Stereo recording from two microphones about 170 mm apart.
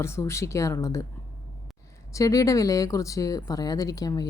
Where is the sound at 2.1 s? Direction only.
20° left (ahead or behind).